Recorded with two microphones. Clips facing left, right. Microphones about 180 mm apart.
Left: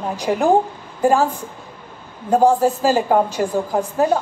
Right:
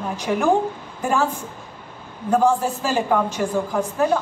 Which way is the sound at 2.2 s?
35° left (ahead or behind).